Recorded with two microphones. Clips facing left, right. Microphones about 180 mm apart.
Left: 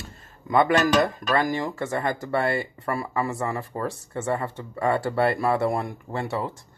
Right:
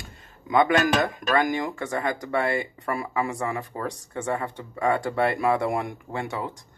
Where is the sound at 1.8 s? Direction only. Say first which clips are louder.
Left 1 dB; 5° left (ahead or behind).